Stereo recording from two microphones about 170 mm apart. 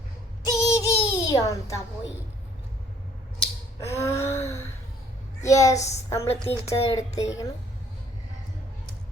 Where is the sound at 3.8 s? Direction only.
15° left (ahead or behind).